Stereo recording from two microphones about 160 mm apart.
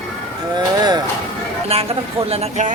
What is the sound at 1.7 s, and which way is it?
Speech, 40° right (ahead or behind).